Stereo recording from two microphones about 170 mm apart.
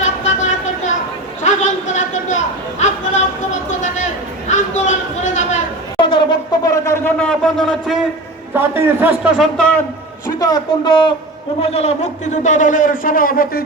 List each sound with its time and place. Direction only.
0.0 s a sound: 45° left (ahead or behind)
6.0 s a sound: 25° left (ahead or behind); by 7.9 s centre (ahead or behind)
8.5 s a man's voice: 10° right (ahead or behind)
9.4 s a man's voice: 5° left (ahead or behind)
10.2 s a man's voice: 20° left (ahead or behind)
11.6 s a man's voice: 40° left (ahead or behind); by 13.7 s 60° left (ahead or behind)